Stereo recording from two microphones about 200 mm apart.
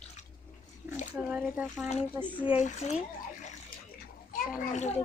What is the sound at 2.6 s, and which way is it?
Speech, 40° left (ahead or behind).